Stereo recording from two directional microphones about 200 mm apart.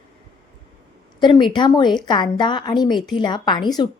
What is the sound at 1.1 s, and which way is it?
A woman's voice, 25° left (ahead or behind).